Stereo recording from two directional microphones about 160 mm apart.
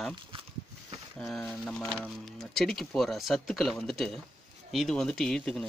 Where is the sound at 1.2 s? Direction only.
Centre (ahead or behind).